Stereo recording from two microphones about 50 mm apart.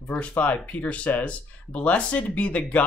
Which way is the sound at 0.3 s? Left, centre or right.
Left.